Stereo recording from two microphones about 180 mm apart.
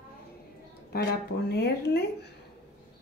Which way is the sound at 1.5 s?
65° left (ahead or behind).